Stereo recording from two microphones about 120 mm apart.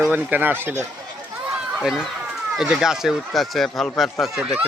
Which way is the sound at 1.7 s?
Centre (ahead or behind).